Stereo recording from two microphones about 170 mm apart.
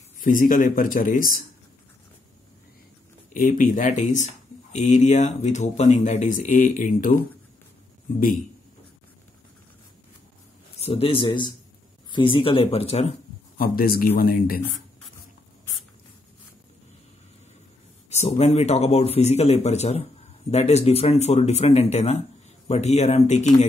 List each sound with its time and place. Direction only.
0.2 s speech: 55° left (ahead or behind)
3.3 s speech: 55° left (ahead or behind)
10.8 s a man's voice: 35° left (ahead or behind)
13.6 s speech: 60° left (ahead or behind)
18.1 s a man's voice: 40° left (ahead or behind)